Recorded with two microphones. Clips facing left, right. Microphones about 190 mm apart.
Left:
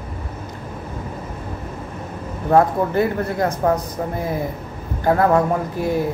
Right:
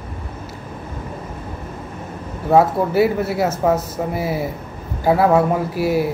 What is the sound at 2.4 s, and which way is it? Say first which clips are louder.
Speech: right 1 dB; 5° right (ahead or behind).